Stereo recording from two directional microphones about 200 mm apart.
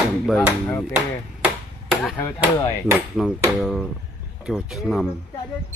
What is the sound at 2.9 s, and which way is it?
Speech, 5° right (ahead or behind).